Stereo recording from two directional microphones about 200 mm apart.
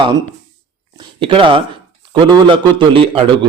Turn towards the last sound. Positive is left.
turn(degrees=-30)  # may be behind; listen again after turning